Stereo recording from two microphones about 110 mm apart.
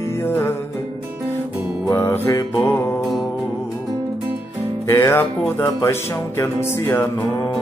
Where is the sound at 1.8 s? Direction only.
25° left (ahead or behind).